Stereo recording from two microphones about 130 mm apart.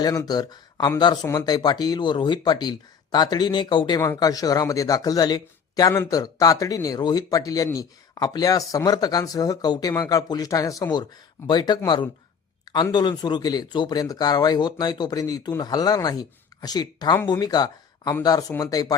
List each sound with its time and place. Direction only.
0.0 s speech: 30° left (ahead or behind)
4.0 s speech: 25° left (ahead or behind)